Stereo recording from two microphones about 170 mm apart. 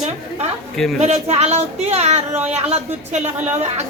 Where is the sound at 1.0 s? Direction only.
40° right (ahead or behind).